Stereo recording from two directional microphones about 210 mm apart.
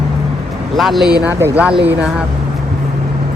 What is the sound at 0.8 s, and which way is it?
Speech, centre (ahead or behind).